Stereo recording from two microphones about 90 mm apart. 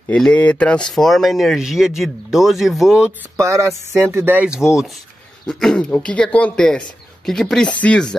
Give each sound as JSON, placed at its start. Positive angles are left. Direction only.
{"t": 0.1, "sound": "speech", "side_deg": 15}
{"t": 3.3, "sound": "speech", "side_deg": -35}
{"t": 4.5, "sound": "speech", "side_deg": -5}
{"t": 5.5, "sound": "speech", "side_deg": 5}